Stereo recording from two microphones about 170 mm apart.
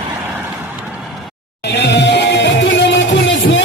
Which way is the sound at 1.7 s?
80° left.